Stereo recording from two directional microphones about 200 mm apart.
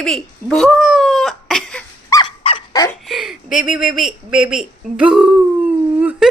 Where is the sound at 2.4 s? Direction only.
25° left (ahead or behind).